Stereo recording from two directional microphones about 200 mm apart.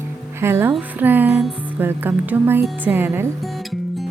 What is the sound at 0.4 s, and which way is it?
Music, 10° right (ahead or behind).